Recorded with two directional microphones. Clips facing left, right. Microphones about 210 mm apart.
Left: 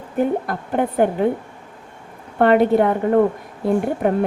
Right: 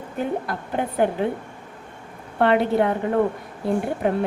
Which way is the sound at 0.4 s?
50° left (ahead or behind).